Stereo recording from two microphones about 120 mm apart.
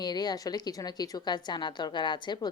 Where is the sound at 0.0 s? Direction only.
35° left (ahead or behind).